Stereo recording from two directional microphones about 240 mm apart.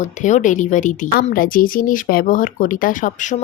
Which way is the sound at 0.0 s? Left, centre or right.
Left.